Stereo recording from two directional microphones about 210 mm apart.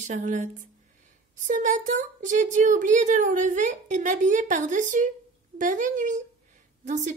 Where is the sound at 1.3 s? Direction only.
35° right (ahead or behind).